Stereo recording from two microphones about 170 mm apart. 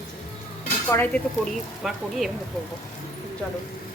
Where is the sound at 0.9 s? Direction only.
15° left (ahead or behind).